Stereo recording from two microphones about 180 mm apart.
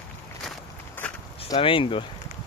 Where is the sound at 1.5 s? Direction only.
30° left (ahead or behind).